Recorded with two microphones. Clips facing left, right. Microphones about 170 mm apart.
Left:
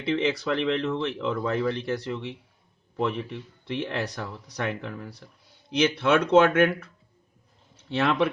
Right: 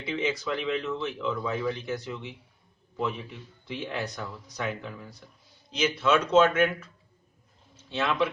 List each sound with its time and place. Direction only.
0.0 s speech: 65° left (ahead or behind)